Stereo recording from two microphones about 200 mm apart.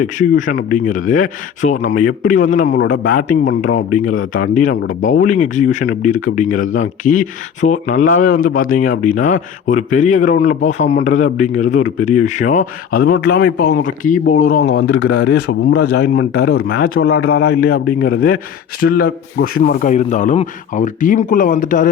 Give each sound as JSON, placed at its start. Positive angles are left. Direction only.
{"t": 0.0, "sound": "a man's voice", "side_deg": 40}